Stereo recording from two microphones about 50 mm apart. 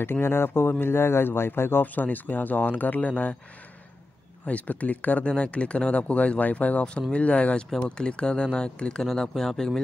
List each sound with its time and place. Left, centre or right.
0.0 s speech: left
4.5 s speech: left; by 9.7 s centre